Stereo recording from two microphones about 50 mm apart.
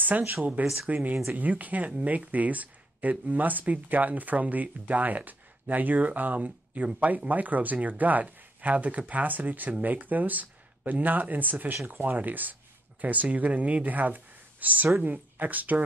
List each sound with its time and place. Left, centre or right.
0.0 s speech: right